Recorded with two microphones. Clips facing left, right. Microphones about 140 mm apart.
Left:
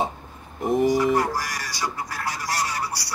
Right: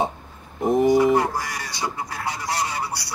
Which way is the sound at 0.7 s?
25° right (ahead or behind).